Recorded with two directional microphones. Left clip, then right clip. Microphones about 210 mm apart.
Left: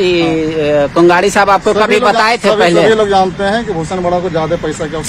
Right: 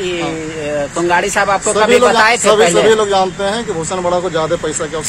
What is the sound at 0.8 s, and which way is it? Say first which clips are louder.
Speech: left 5 dB; 45° left (ahead or behind).